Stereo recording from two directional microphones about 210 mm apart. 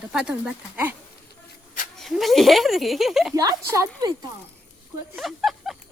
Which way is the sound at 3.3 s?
15° right (ahead or behind).